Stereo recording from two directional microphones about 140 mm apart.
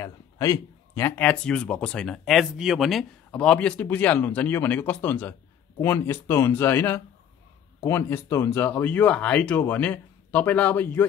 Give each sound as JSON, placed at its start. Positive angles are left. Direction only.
{"t": 0.0, "sound": "speech", "side_deg": 20}